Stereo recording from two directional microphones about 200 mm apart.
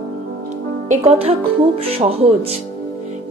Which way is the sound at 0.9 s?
30° right (ahead or behind).